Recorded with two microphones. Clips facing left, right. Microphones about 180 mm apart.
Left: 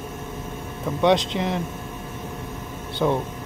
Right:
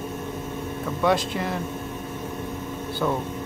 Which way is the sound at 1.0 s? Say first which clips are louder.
Left 3 dB; 20° left (ahead or behind).